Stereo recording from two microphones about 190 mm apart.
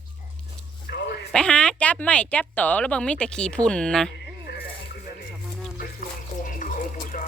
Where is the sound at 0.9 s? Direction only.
60° left (ahead or behind).